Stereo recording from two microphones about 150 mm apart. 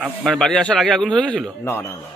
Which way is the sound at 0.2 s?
5° left (ahead or behind).